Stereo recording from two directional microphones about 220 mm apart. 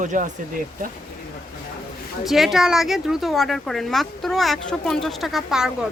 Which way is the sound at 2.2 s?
Centre (ahead or behind).